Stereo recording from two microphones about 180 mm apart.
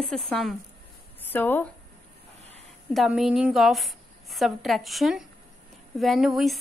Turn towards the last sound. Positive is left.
turn(degrees=0)  # may be behind; listen again after turning